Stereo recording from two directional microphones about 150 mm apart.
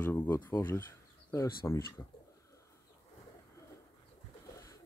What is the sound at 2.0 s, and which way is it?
Speech, 20° left (ahead or behind).